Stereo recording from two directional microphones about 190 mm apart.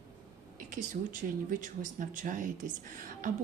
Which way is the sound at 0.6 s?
45° right (ahead or behind).